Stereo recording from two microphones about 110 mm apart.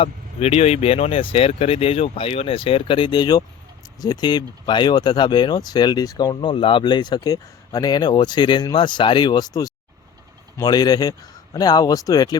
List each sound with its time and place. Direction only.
0.0 s speech: 70° left (ahead or behind); by 12.4 s 35° left (ahead or behind)